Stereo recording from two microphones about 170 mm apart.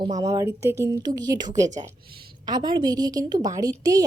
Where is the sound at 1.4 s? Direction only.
45° right (ahead or behind).